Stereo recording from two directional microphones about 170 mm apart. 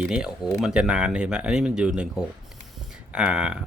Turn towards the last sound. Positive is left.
turn(degrees=-5)  # may be behind; listen again after turning